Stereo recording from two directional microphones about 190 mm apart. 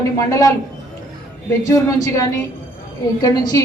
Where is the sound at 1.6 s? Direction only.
15° left (ahead or behind).